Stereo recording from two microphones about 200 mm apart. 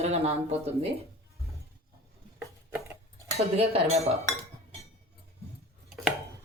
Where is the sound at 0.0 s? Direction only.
30° right (ahead or behind).